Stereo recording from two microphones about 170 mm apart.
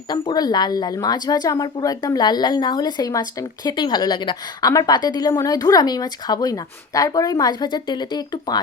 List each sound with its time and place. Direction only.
0.1 s a woman's voice: 25° left (ahead or behind)